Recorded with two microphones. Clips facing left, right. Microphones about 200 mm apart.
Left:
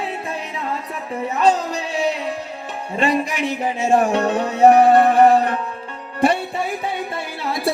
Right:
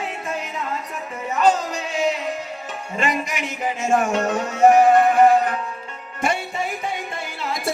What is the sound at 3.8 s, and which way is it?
Music, 35° left (ahead or behind).